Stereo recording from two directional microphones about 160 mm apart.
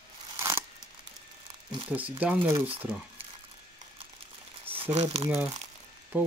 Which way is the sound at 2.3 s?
35° right (ahead or behind).